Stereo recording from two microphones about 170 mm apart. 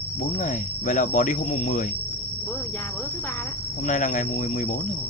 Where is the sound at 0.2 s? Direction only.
45° left (ahead or behind).